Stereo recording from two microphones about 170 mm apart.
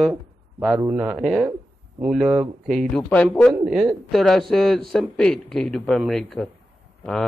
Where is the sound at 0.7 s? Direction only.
10° right (ahead or behind).